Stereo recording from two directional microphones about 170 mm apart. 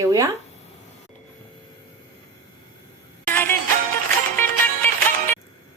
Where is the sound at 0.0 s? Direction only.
20° right (ahead or behind).